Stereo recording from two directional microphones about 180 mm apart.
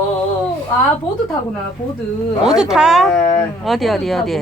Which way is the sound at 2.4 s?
5° right (ahead or behind).